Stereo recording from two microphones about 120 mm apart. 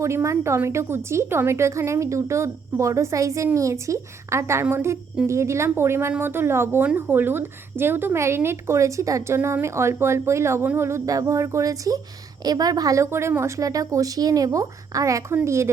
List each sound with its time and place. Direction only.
0.0 s a woman's voice: 25° right (ahead or behind)